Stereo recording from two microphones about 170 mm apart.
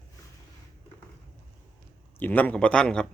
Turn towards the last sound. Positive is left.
turn(degrees=5)  # may be behind; listen again after turning